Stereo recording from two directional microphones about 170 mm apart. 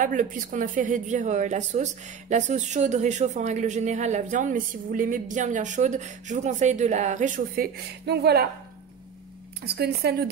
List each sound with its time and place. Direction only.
0.0 s speech: 50° right (ahead or behind); by 8.5 s 70° right (ahead or behind)
9.7 s speech: 70° right (ahead or behind)